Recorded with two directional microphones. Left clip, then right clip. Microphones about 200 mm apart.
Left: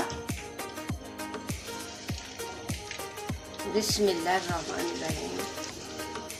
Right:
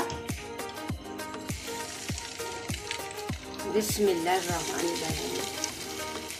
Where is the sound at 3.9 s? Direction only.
Centre (ahead or behind).